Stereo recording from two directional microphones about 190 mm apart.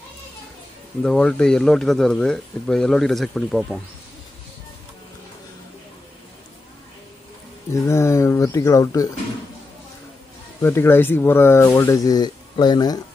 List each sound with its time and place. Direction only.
1.0 s speech: 5° left (ahead or behind)
7.7 s speech: 15° left (ahead or behind)
10.6 s speech: 10° left (ahead or behind)